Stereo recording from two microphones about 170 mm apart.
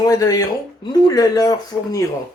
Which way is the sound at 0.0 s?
20° left (ahead or behind).